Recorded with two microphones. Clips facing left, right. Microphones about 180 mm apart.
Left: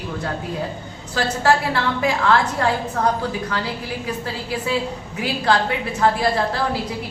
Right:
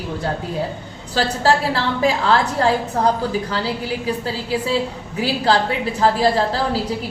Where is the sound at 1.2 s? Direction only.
30° right (ahead or behind).